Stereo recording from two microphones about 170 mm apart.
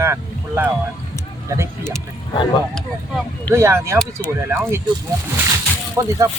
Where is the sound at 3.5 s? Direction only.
15° right (ahead or behind).